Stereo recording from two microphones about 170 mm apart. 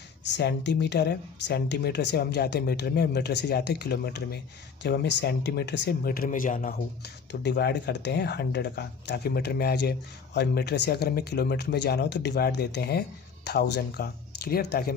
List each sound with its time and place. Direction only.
0.3 s speech: 85° left
4.8 s speech: 85° left; by 6.7 s 50° left (ahead or behind)
7.4 s speech: 75° left (ahead or behind)